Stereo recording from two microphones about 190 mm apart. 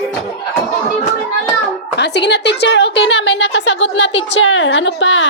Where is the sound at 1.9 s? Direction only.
65° left (ahead or behind).